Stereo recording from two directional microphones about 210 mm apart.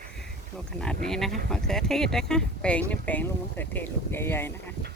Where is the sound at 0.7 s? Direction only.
5° left (ahead or behind).